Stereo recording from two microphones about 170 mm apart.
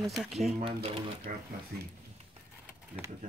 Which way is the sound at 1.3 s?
60° right (ahead or behind).